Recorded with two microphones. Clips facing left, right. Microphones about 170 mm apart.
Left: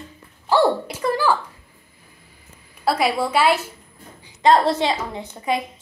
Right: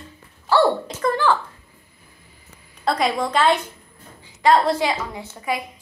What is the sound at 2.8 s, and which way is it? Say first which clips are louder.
Speech: left 1 dB; 5° left (ahead or behind).